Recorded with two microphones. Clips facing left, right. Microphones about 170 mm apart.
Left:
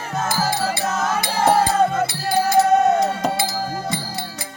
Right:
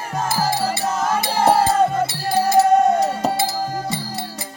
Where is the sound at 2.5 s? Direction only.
10° right (ahead or behind).